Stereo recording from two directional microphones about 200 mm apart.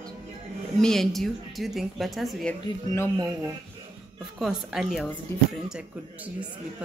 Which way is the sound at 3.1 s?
20° right (ahead or behind).